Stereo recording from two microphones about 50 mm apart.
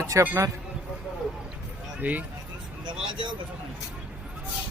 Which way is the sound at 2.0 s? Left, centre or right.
Right.